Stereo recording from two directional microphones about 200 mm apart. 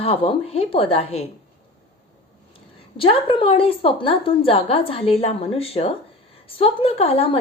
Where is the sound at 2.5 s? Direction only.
25° left (ahead or behind).